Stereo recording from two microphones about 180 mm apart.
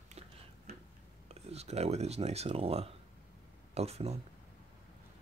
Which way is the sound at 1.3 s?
35° right (ahead or behind).